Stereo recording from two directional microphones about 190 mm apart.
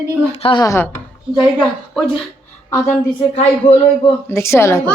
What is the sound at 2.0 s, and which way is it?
A woman's voice, centre (ahead or behind).